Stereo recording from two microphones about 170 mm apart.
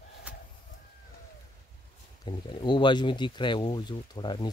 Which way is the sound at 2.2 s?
30° left (ahead or behind).